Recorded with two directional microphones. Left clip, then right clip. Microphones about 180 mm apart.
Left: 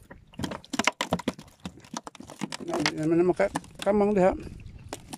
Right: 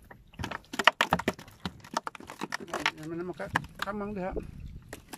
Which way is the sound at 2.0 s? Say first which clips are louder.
Right 1 dB; 20° left (ahead or behind).